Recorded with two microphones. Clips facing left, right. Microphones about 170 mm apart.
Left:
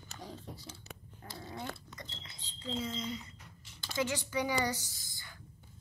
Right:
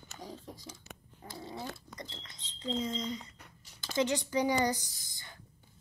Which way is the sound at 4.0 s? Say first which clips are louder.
Right 4 dB; 20° right (ahead or behind).